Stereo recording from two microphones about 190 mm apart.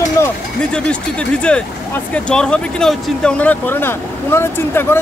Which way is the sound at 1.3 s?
5° left (ahead or behind).